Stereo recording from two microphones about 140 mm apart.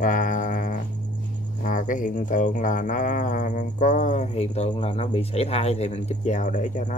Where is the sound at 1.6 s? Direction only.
70° left (ahead or behind).